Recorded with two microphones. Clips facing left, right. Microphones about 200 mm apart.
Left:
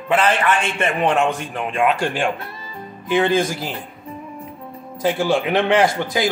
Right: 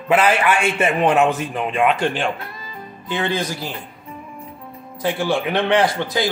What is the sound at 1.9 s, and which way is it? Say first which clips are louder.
Speech: even; 10° left (ahead or behind).